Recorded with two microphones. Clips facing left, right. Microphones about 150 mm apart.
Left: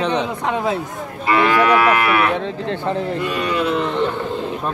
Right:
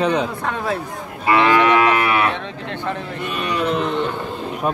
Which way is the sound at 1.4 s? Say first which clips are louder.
Even; 20° right (ahead or behind).